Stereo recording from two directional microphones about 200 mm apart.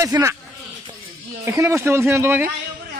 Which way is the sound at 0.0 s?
15° right (ahead or behind).